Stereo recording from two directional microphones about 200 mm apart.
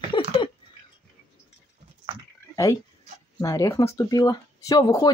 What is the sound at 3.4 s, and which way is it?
Speech, 15° left (ahead or behind).